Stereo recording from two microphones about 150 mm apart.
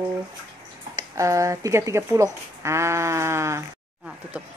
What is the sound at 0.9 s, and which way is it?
Speech, 20° right (ahead or behind).